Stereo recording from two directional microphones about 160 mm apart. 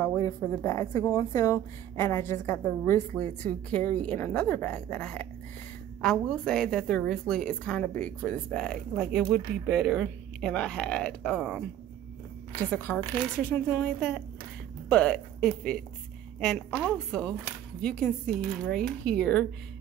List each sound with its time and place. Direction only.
0.0 s a woman's voice: 20° left (ahead or behind)
12.7 s a woman's voice: 10° left (ahead or behind)
16.8 s speech: 5° left (ahead or behind)